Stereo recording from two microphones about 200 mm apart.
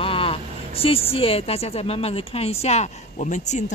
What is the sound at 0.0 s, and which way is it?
A woman's voice, 25° left (ahead or behind).